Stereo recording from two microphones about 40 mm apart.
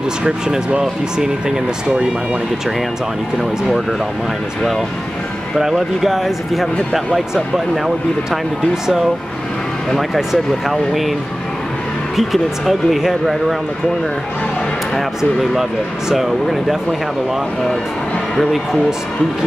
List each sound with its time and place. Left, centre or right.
0.7 s speech: centre
5.6 s speech: centre
9.9 s speech: centre
12.2 s speech: centre
16.1 s speech: centre
18.5 s speech: centre